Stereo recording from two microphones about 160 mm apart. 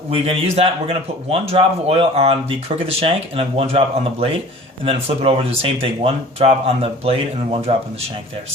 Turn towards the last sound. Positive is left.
turn(degrees=-40)  # may be behind; listen again after turning